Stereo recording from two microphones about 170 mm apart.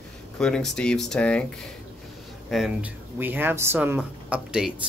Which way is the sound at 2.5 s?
5° right (ahead or behind).